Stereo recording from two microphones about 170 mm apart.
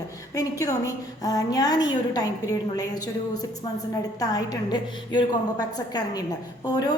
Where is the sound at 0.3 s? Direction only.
20° left (ahead or behind).